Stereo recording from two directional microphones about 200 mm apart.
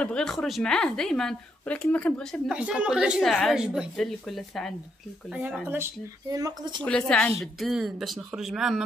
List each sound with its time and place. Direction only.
0.0 s a woman's voice: 5° left (ahead or behind)
2.5 s a woman's voice: 5° right (ahead or behind)
6.3 s speech: 20° right (ahead or behind)
6.8 s a woman's voice: 5° left (ahead or behind)